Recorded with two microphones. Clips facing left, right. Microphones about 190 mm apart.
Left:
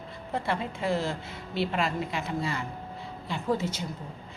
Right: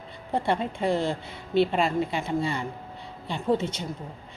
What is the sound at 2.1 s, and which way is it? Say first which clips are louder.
Speech: right 4 dB; 30° right (ahead or behind).